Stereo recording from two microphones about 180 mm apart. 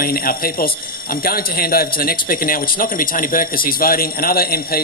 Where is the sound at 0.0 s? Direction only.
55° left (ahead or behind).